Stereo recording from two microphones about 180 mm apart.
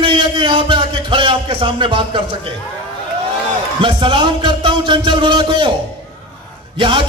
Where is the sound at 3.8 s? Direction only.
25° right (ahead or behind).